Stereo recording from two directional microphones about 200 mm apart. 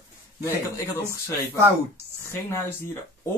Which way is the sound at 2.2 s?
15° left (ahead or behind).